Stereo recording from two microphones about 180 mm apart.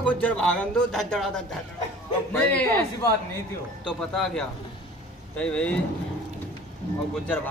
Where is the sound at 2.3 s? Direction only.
5° left (ahead or behind).